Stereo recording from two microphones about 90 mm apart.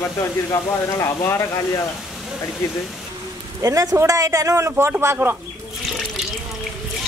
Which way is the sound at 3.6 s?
40° right (ahead or behind).